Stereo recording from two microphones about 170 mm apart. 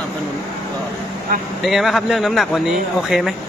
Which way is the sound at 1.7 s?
Centre (ahead or behind).